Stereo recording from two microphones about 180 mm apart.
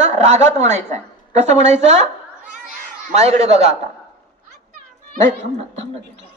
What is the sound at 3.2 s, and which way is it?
Speech, 35° right (ahead or behind).